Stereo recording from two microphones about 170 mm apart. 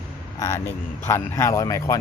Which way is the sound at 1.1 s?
20° left (ahead or behind).